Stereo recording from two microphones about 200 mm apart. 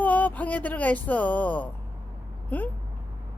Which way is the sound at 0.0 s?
10° left (ahead or behind).